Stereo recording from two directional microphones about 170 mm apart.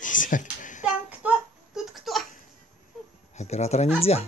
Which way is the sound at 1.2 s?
10° right (ahead or behind).